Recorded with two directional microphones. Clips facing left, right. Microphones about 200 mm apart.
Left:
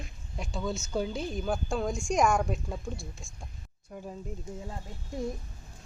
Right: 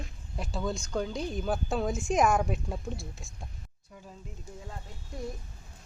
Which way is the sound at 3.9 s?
55° left (ahead or behind).